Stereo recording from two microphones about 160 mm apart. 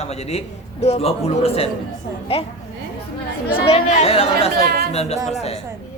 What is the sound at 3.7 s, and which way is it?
A man's voice, 40° left (ahead or behind).